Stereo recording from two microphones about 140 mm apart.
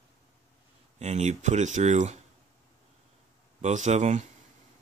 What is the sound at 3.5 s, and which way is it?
Speech, 60° right (ahead or behind).